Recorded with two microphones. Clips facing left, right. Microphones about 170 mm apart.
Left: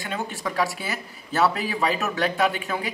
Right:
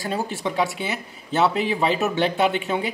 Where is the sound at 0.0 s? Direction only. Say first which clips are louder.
Right 4 dB; 30° right (ahead or behind).